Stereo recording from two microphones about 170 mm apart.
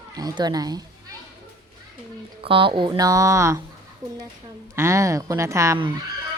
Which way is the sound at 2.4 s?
30° right (ahead or behind).